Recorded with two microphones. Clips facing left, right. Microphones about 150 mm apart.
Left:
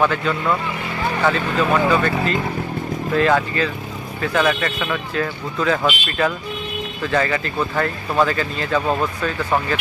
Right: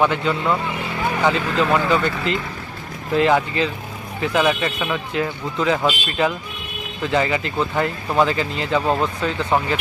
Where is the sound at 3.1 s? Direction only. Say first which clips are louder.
Right 1 dB; 20° right (ahead or behind).